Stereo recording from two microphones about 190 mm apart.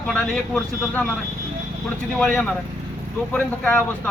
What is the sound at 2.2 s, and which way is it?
A man's voice, 5° left (ahead or behind).